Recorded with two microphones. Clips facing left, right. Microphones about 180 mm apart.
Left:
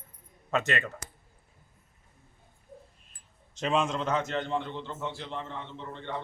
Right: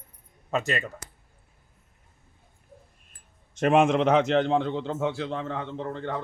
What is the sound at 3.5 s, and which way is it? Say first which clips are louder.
A man's voice: right 8 dB; 55° right (ahead or behind).